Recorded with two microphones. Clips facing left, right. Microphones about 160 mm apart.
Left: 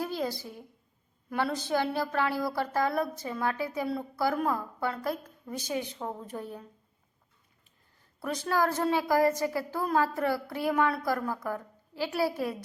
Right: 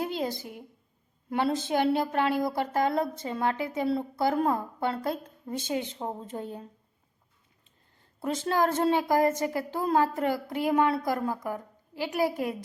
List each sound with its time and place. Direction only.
0.0 s a woman's voice: 20° right (ahead or behind)
8.2 s a woman's voice: 25° right (ahead or behind)